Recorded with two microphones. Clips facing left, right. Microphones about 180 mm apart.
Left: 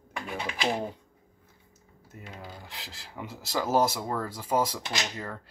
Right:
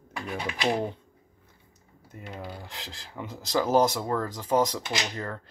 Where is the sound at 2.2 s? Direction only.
65° right (ahead or behind).